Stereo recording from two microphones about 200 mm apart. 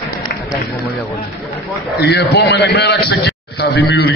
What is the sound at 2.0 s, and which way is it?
A man's voice, 55° left (ahead or behind).